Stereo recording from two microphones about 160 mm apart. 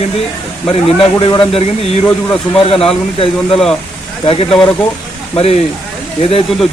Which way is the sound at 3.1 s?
35° left (ahead or behind).